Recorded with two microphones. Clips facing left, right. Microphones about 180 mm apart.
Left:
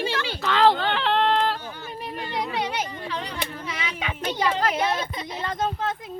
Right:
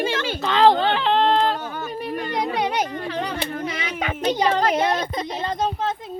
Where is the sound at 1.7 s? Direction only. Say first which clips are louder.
Right 6 dB; 45° right (ahead or behind).